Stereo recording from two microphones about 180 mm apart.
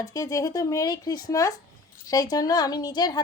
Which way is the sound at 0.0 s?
20° left (ahead or behind).